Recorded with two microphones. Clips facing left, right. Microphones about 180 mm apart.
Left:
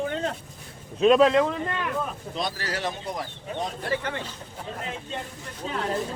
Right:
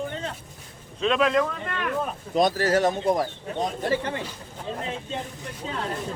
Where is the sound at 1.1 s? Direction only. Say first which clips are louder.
Left 4 dB; 30° left (ahead or behind).